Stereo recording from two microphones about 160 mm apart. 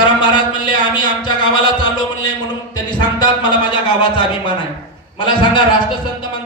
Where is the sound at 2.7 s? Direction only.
25° left (ahead or behind).